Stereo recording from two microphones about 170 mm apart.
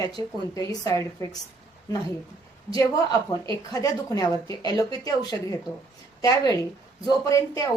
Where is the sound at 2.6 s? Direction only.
20° left (ahead or behind).